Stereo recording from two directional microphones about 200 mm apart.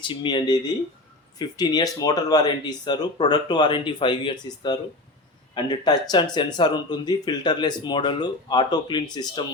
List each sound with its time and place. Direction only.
0.0 s speech: 25° left (ahead or behind)